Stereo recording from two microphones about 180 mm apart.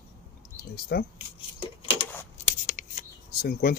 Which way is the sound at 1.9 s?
30° left (ahead or behind).